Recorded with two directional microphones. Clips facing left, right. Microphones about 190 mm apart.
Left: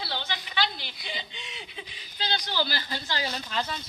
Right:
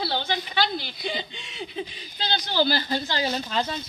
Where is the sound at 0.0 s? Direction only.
35° right (ahead or behind).